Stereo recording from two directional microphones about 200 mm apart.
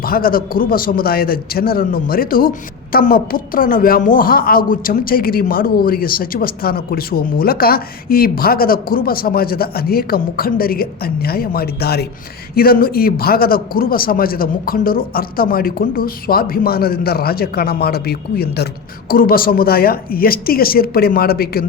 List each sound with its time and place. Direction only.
0.0 s a man's voice: 45° left (ahead or behind)